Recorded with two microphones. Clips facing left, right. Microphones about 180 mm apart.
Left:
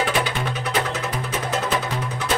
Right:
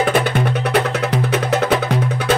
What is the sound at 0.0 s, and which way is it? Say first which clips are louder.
Music: right 6 dB; 55° right (ahead or behind).